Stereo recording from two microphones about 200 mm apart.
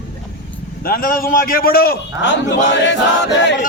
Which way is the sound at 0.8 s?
45° left (ahead or behind).